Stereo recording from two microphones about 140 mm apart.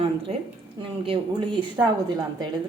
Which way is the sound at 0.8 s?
35° right (ahead or behind).